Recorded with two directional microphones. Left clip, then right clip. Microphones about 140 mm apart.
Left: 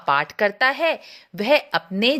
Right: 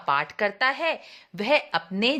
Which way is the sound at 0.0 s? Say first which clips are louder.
Left 5 dB; 30° left (ahead or behind).